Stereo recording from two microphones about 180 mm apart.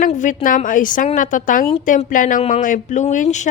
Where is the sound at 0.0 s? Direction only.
45° left (ahead or behind).